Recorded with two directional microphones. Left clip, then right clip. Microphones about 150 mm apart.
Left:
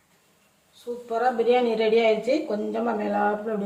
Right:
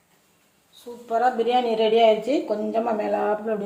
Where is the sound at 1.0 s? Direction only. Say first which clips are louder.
Right 1 dB; 35° right (ahead or behind).